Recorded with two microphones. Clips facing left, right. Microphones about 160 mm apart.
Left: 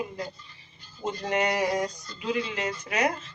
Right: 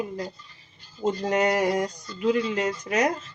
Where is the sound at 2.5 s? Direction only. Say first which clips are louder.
Right 5 dB; 40° right (ahead or behind).